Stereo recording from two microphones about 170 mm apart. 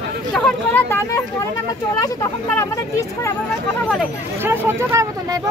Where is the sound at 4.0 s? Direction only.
15° right (ahead or behind).